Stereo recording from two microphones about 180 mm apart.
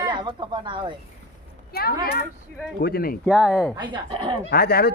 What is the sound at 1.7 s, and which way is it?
Speech, 60° left (ahead or behind).